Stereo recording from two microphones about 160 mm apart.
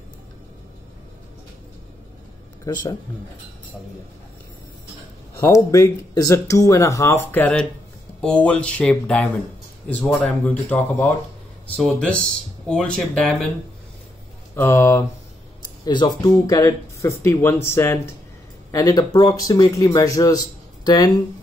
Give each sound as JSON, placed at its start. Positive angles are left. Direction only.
{"t": 2.6, "sound": "speech", "side_deg": 25}
{"t": 5.5, "sound": "speech", "side_deg": 20}
{"t": 14.5, "sound": "speech", "side_deg": 15}